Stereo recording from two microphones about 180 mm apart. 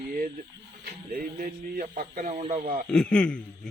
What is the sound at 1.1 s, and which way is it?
A man's voice, 50° right (ahead or behind).